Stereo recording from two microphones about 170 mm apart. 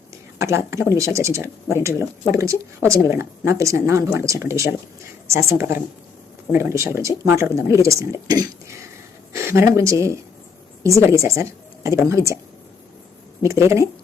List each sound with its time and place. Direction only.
0.3 s speech: 15° right (ahead or behind)
13.4 s speech: 15° right (ahead or behind)